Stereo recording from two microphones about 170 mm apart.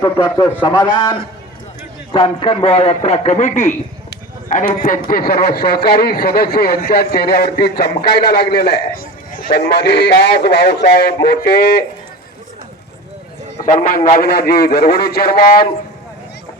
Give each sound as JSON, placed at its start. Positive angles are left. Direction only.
{"t": 0.0, "sound": "a man's voice", "side_deg": 20}
{"t": 13.7, "sound": "a man's voice", "side_deg": 50}
{"t": 14.2, "sound": "speech", "side_deg": 65}